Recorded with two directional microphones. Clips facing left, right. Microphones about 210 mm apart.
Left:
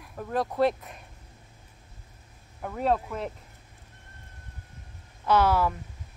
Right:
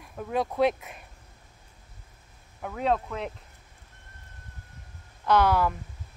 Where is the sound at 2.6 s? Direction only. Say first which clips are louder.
Even; 5° left (ahead or behind).